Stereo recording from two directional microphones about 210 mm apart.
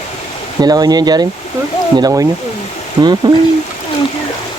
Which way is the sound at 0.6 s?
20° right (ahead or behind).